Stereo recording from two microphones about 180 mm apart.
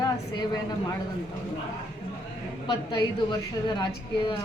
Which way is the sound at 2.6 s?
25° left (ahead or behind).